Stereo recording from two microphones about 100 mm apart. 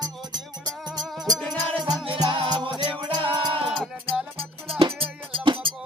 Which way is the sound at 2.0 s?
60° right (ahead or behind).